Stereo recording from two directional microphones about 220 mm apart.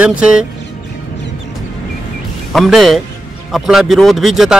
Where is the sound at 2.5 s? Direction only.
Centre (ahead or behind).